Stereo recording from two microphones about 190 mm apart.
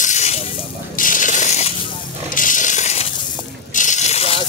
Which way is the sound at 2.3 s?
45° left (ahead or behind).